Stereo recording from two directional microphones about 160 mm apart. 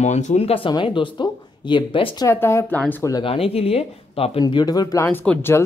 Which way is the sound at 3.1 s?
35° left (ahead or behind).